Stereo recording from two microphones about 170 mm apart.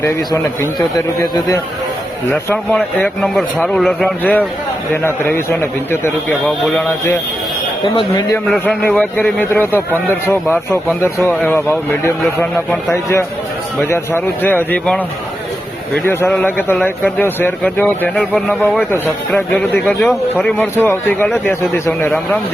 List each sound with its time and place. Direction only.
0.0 s a man's voice: 20° left (ahead or behind)
2.3 s a man's voice: 10° left (ahead or behind)
8.4 s speech: 5° left (ahead or behind)
16.0 s speech: 10° left (ahead or behind)